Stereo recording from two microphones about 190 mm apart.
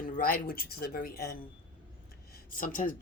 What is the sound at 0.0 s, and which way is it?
Speech, 50° left (ahead or behind).